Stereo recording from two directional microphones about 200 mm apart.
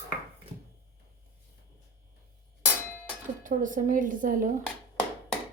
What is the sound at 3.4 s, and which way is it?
A woman's voice, 40° right (ahead or behind).